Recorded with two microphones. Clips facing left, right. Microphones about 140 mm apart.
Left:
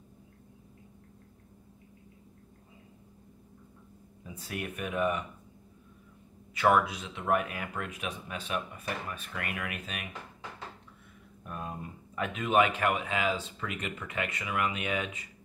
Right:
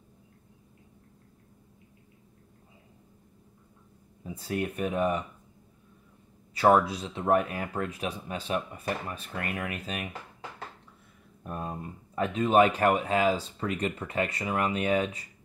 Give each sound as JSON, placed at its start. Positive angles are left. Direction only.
{"t": 4.2, "sound": "speech", "side_deg": -35}
{"t": 6.5, "sound": "speech", "side_deg": -35}
{"t": 11.4, "sound": "speech", "side_deg": -35}